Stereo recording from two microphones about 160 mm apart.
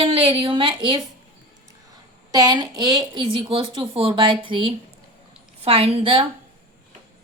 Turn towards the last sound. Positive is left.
turn(degrees=-35)  # may be behind; listen again after turning